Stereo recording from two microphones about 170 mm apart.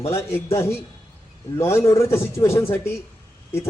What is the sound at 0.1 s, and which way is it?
Speech, 15° left (ahead or behind).